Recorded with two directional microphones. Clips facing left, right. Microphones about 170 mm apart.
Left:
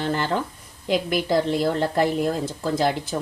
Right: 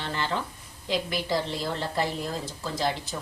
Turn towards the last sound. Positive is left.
turn(degrees=55)  # may be behind; listen again after turning